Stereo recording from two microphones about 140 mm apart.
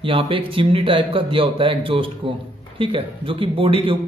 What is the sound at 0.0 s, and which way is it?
A man's voice, 40° right (ahead or behind).